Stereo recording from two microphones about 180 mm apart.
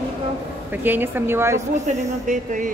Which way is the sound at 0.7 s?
10° right (ahead or behind).